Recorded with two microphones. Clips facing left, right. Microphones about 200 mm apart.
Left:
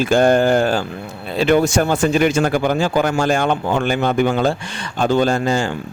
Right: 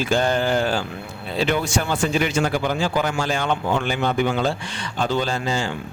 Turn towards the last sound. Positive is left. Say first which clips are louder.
# left 7 dB
turn(degrees=50)  # may be behind; listen again after turning